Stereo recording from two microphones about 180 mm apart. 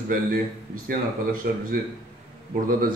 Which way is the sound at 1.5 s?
55° right (ahead or behind).